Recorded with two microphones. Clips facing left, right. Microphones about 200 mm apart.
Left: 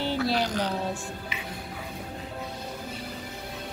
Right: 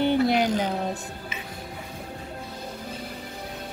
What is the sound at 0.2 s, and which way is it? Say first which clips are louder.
Music: right 5 dB; 20° right (ahead or behind).